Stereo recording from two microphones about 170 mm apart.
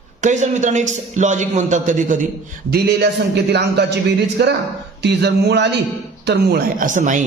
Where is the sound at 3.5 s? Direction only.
80° right.